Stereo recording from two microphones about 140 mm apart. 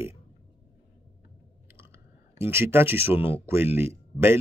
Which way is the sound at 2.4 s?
15° right (ahead or behind).